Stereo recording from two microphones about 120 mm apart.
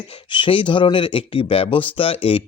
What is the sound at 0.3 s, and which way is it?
Speech, 45° left (ahead or behind).